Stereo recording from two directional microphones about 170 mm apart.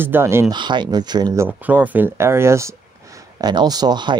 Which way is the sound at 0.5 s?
25° right (ahead or behind).